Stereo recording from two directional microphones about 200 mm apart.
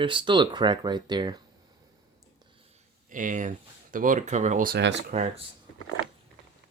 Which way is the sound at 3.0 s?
40° right (ahead or behind).